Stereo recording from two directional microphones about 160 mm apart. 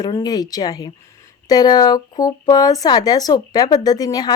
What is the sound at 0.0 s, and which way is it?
A woman's voice, 25° left (ahead or behind).